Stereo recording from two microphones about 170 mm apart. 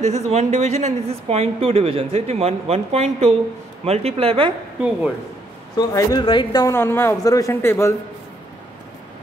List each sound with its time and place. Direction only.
0.0 s speech: 40° right (ahead or behind)
4.7 s speech: 5° right (ahead or behind)
5.8 s speech: 25° left (ahead or behind)
6.7 s speech: 15° left (ahead or behind)